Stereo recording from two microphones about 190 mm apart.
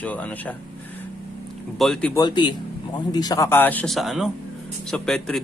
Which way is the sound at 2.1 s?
20° left (ahead or behind).